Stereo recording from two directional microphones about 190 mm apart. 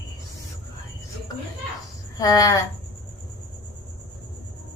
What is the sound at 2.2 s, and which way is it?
Speech, 20° left (ahead or behind).